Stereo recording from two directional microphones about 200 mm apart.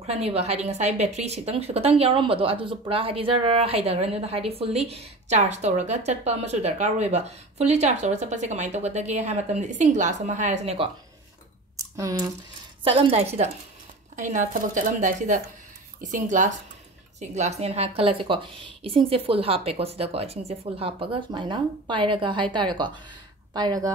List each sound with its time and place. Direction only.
0.0 s a woman's voice: 30° right (ahead or behind)
11.7 s a sound: 15° right (ahead or behind)
12.8 s a woman's voice: 30° right (ahead or behind)